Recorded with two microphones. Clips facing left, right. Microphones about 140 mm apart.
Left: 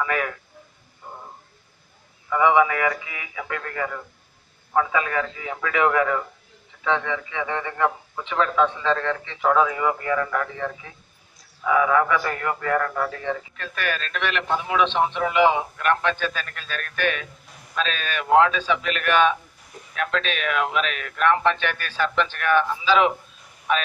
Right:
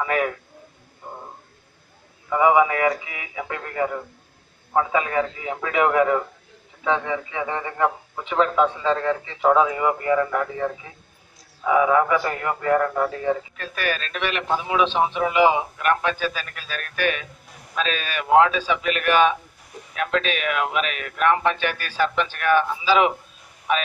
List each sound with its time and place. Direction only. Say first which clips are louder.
0.0 s a man's voice: right 3 dB; 20° right (ahead or behind)
1.0 s a sound: right 2 dB; 25° right (ahead or behind)
2.2 s a man's voice: right 1 dB; 15° right (ahead or behind)